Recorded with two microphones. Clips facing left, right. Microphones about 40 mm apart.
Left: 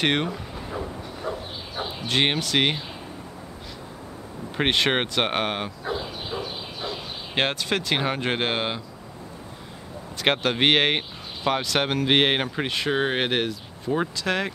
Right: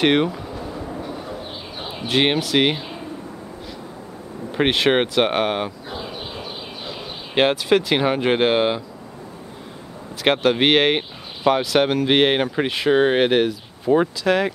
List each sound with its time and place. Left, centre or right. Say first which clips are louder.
0.0 s speech: right 6 dB; centre
1.8 s speech: right 3 dB; centre
4.5 s speech: right 4 dB; centre
5.9 s a sound: even; centre
10.2 s speech: right 4 dB; centre
13.9 s speech: right 8 dB; right
14.2 s speech: right 7 dB; centre